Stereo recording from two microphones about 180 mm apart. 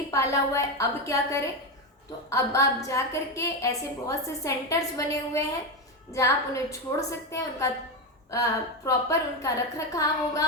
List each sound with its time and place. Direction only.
0.1 s a woman's voice: 15° left (ahead or behind)